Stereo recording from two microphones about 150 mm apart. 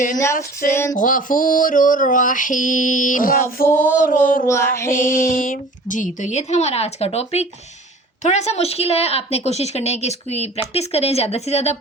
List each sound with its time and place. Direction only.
0.7 s music: 15° left (ahead or behind)
0.9 s a sound: 60° left (ahead or behind)
3.7 s music: 15° left (ahead or behind)
4.1 s a sound: 65° left (ahead or behind)
4.4 s music: 20° left (ahead or behind)
4.9 s a woman's voice: 65° left (ahead or behind); by 11.8 s 45° left (ahead or behind)